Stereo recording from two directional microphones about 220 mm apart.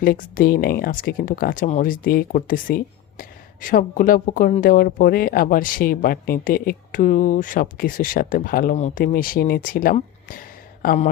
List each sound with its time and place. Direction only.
0.0 s speech: 40° left (ahead or behind)